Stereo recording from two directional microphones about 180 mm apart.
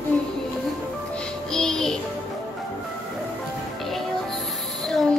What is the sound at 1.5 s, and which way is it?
Music, 5° left (ahead or behind).